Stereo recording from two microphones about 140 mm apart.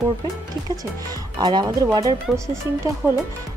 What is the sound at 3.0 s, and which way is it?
Speech, 15° right (ahead or behind).